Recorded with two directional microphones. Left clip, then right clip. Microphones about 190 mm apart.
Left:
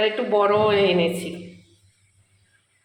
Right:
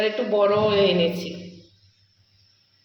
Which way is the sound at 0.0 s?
Centre (ahead or behind).